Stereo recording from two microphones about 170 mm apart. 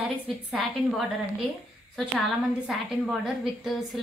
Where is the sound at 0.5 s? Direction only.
Centre (ahead or behind).